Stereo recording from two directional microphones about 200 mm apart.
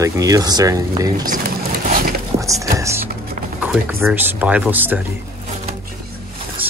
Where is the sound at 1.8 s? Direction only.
45° right (ahead or behind).